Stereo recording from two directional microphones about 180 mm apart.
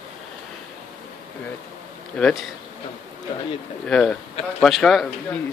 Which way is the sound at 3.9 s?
5° left (ahead or behind).